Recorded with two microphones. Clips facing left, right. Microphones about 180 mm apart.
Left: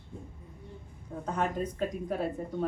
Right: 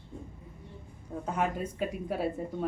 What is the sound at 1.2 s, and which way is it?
Speech, 10° right (ahead or behind).